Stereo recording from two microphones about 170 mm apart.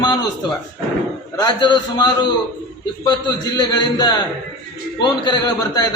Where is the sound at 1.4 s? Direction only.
25° left (ahead or behind).